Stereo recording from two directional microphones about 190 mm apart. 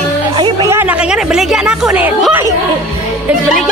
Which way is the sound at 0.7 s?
5° right (ahead or behind).